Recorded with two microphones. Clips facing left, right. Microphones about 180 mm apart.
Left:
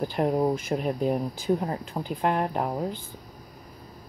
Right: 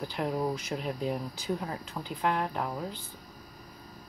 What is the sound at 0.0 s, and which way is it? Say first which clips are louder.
Speech: left 7 dB; 45° left (ahead or behind).